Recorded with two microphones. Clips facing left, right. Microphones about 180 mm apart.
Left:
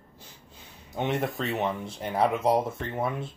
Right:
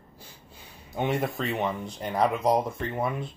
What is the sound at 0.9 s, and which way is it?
Speech, 5° right (ahead or behind).